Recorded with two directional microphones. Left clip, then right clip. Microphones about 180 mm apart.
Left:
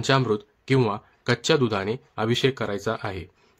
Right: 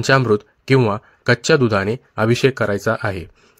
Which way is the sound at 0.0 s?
35° right (ahead or behind).